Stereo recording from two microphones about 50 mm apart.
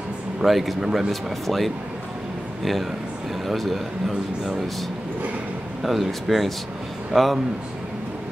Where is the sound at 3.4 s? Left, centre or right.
Centre.